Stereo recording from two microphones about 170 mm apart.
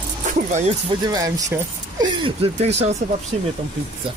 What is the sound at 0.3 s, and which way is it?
Speech, 40° right (ahead or behind).